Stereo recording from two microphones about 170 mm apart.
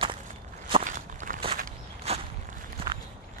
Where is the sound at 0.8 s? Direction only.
50° right (ahead or behind).